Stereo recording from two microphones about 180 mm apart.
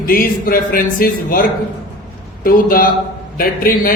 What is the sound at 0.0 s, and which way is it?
A man's voice, 50° left (ahead or behind).